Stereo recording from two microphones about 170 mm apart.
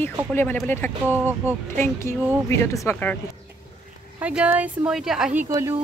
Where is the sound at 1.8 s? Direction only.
15° left (ahead or behind).